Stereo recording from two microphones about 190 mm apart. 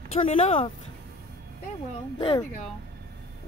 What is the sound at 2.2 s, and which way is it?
Speech, 25° left (ahead or behind).